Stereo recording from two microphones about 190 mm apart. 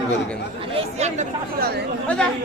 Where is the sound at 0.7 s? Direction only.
35° right (ahead or behind).